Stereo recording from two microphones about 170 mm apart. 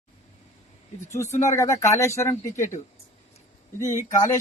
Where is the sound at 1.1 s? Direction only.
15° left (ahead or behind).